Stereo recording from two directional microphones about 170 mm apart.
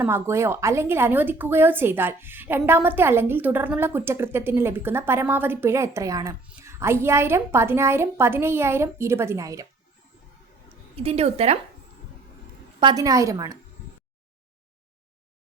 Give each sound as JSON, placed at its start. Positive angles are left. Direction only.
{"t": 0.0, "sound": "a woman's voice", "side_deg": -15}
{"t": 10.9, "sound": "a woman's voice", "side_deg": -35}
{"t": 12.8, "sound": "a woman's voice", "side_deg": -20}